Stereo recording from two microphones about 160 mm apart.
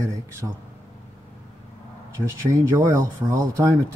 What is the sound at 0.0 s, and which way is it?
Speech, 20° right (ahead or behind).